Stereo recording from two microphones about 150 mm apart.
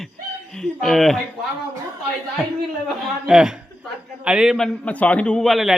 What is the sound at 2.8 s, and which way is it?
A man's voice, 5° right (ahead or behind).